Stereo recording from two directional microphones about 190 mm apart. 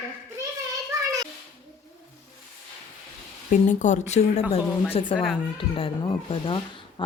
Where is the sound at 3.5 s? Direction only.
40° left (ahead or behind).